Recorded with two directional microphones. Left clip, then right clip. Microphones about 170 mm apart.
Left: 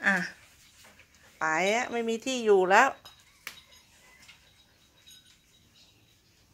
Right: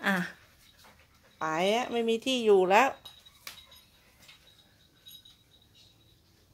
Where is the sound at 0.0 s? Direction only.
20° right (ahead or behind).